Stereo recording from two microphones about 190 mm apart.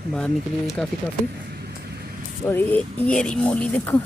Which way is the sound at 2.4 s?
10° left (ahead or behind).